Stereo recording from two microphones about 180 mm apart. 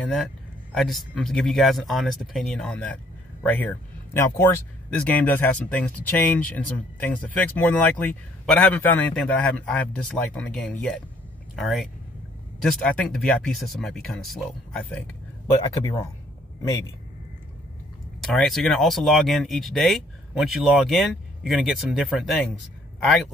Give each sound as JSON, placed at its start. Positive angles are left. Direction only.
{"t": 0.0, "sound": "speech", "side_deg": 0}
{"t": 15.8, "sound": "speech", "side_deg": 15}
{"t": 18.2, "sound": "speech", "side_deg": 0}